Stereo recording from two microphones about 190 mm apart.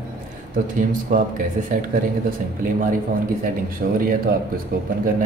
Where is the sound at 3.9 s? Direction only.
50° right (ahead or behind).